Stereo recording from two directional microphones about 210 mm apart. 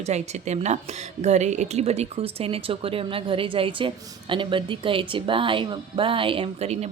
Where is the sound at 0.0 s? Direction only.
30° right (ahead or behind).